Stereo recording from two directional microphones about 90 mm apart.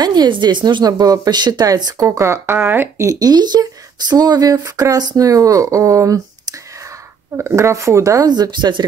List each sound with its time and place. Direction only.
0.0 s speech: 50° right (ahead or behind)
2.0 s speech: 30° right (ahead or behind)
3.1 s speech: 45° right (ahead or behind)
7.3 s speech: 30° right (ahead or behind)
8.3 s speech: 55° right (ahead or behind)